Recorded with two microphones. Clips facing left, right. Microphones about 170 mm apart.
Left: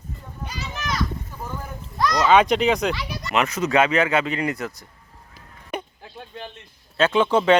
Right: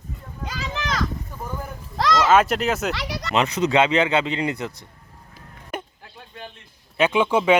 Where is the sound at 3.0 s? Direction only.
75° right (ahead or behind).